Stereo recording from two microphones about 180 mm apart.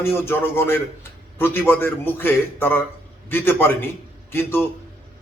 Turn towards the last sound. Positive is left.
turn(degrees=15)  # may be behind; listen again after turning